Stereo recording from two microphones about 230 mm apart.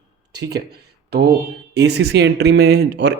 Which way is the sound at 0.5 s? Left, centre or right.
Right.